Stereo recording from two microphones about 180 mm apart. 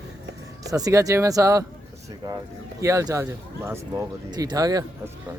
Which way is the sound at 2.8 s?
15° right (ahead or behind).